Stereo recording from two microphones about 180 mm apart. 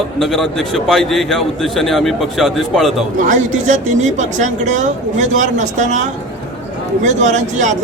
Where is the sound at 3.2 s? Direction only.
45° right (ahead or behind).